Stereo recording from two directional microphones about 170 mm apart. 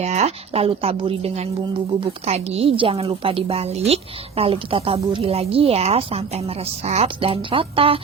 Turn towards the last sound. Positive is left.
turn(degrees=-35)  # may be behind; listen again after turning